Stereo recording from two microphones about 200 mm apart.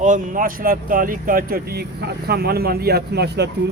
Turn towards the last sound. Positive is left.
turn(degrees=-55)  # may be behind; listen again after turning